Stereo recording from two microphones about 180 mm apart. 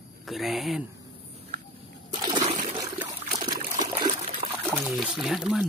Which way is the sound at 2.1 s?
25° right (ahead or behind).